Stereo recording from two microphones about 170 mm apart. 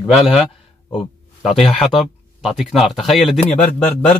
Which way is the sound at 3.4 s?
40° left (ahead or behind).